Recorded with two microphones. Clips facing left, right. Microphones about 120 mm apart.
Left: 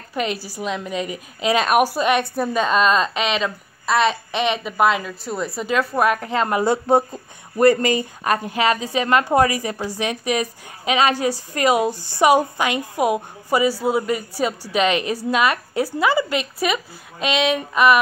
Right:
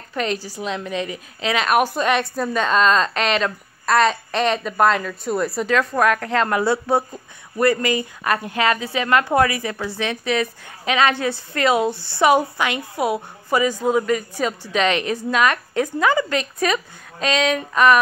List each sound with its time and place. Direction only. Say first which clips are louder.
0.1 s a woman's voice: even; 10° left (ahead or behind)
0.9 s a woman's voice: even; 30° right (ahead or behind)
1.5 s a woman's voice: left 2 dB; 25° left (ahead or behind)
1.8 s a woman's voice: left 1 dB; 10° left (ahead or behind)